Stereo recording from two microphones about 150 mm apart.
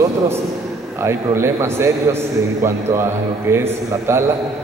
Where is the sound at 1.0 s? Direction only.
15° right (ahead or behind).